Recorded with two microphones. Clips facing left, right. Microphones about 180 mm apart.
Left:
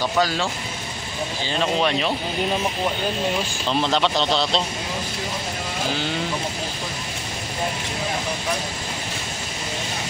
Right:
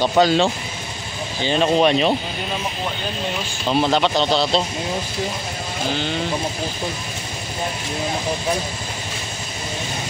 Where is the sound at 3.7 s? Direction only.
5° right (ahead or behind).